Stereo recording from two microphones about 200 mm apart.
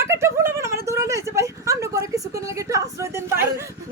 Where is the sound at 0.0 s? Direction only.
15° right (ahead or behind).